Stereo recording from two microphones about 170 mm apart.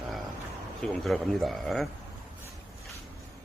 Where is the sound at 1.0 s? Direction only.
Centre (ahead or behind).